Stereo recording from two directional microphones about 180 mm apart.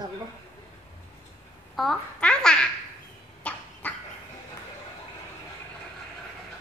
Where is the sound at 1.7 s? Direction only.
Centre (ahead or behind).